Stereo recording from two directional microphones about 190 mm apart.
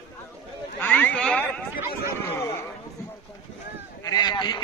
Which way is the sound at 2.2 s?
15° left (ahead or behind).